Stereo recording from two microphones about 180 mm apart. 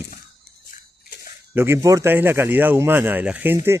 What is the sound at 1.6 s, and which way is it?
Speech, 15° right (ahead or behind).